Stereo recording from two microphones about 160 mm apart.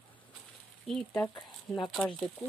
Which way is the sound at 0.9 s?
5° left (ahead or behind).